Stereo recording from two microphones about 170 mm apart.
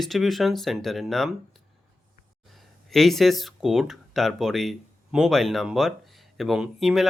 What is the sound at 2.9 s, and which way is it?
Speech, centre (ahead or behind).